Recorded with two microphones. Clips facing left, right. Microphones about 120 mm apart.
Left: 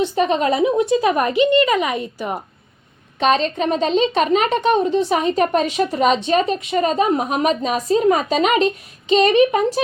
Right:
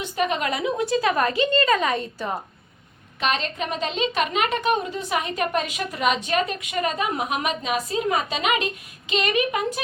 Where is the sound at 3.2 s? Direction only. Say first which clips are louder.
Left 8 dB; 35° left (ahead or behind).